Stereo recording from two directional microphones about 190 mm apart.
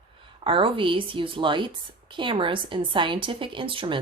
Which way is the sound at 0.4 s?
25° right (ahead or behind).